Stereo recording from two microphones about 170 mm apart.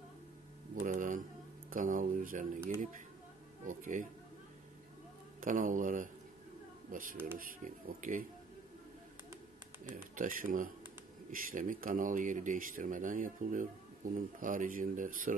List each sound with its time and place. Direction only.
0.7 s a sound: 50° right (ahead or behind)
3.6 s speech: 50° right (ahead or behind)
5.4 s speech: 50° right (ahead or behind)
10.1 s speech: 55° right (ahead or behind)